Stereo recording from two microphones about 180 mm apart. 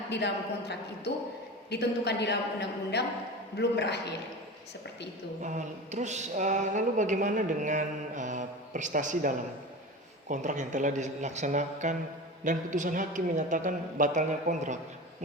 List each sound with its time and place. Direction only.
0.1 s a woman's voice: 70° left (ahead or behind)
1.7 s a woman's voice: 70° left (ahead or behind)
5.4 s speech: 40° right (ahead or behind)